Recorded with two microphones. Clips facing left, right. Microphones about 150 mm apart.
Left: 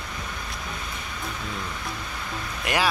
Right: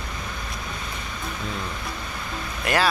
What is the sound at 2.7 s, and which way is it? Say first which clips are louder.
Speech: right 3 dB; 15° left (ahead or behind).